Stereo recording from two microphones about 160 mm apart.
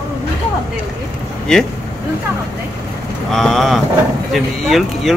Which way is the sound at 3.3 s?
Centre (ahead or behind).